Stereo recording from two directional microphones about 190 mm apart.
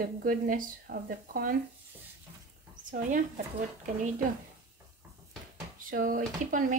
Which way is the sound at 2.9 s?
45° right (ahead or behind).